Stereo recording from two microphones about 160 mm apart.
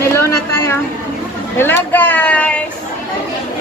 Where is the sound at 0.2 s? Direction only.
15° left (ahead or behind).